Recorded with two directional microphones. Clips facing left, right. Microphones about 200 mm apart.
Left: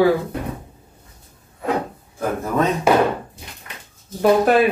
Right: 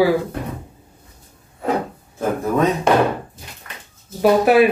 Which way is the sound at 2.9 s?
5° left (ahead or behind).